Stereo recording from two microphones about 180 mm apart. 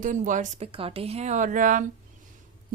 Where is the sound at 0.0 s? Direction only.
45° right (ahead or behind).